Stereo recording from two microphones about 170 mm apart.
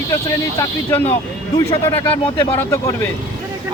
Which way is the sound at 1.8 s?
15° left (ahead or behind).